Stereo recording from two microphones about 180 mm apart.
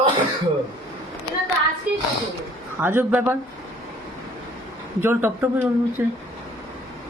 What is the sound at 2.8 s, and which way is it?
Speech, 10° right (ahead or behind).